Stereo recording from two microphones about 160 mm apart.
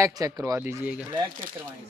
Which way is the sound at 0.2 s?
20° right (ahead or behind).